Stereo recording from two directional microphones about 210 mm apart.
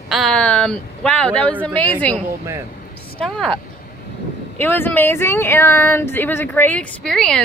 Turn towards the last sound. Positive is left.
turn(degrees=5)  # may be behind; listen again after turning